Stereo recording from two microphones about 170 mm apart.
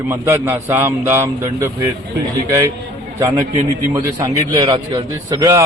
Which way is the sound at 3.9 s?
20° right (ahead or behind).